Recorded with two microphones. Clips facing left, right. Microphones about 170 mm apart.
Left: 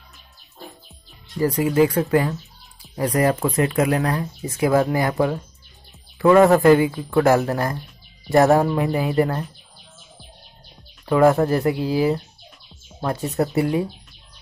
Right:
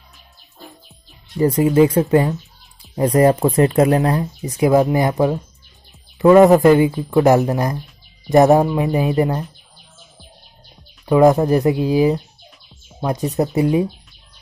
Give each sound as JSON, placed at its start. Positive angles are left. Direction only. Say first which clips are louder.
{"t": 1.4, "sound": "speech", "louder": "right 4 dB", "side_deg": -25}
{"t": 11.1, "sound": "speech", "louder": "right 3 dB", "side_deg": -20}